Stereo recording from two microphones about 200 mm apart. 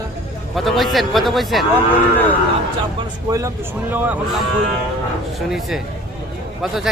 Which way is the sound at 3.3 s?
15° right (ahead or behind).